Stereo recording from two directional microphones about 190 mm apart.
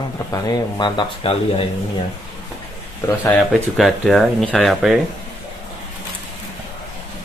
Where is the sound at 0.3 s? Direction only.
20° left (ahead or behind).